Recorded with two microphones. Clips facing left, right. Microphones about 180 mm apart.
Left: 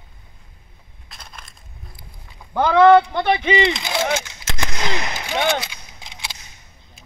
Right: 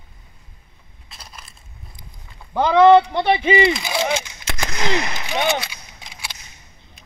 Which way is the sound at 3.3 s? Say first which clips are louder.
Right 2 dB; 5° right (ahead or behind).